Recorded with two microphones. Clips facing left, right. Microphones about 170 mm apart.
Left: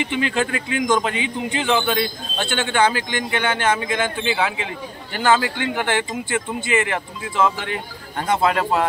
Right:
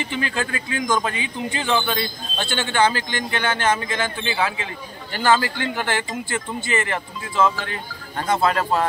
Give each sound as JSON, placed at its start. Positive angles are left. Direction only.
{"t": 0.0, "sound": "a man's voice", "side_deg": 20}